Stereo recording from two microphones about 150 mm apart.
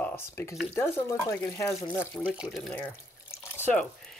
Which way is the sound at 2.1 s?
5° right (ahead or behind).